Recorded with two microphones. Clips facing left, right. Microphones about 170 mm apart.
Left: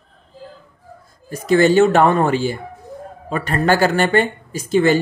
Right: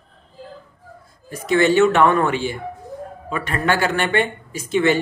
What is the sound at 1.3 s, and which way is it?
Speech, 40° left (ahead or behind).